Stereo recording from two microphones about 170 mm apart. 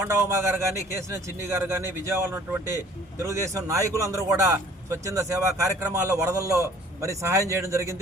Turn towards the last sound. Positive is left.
turn(degrees=-15)  # may be behind; listen again after turning